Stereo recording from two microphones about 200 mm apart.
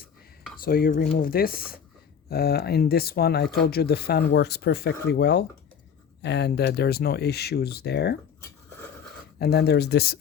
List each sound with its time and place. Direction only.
0.6 s speech: 45° left (ahead or behind)
9.4 s speech: 55° left (ahead or behind)